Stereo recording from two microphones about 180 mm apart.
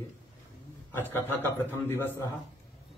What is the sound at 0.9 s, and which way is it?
Speech, 10° left (ahead or behind).